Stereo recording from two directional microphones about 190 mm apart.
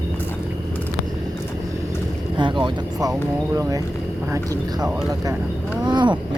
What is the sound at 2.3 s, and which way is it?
Speech, 25° right (ahead or behind).